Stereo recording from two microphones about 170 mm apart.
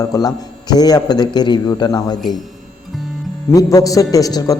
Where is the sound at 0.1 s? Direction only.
20° left (ahead or behind).